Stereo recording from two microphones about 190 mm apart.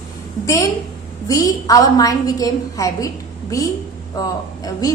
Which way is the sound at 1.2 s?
20° left (ahead or behind).